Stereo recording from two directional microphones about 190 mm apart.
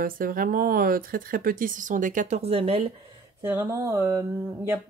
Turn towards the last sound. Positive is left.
turn(degrees=-15)  # may be behind; listen again after turning